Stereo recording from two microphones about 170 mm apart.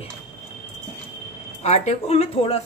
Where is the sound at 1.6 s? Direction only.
40° left (ahead or behind).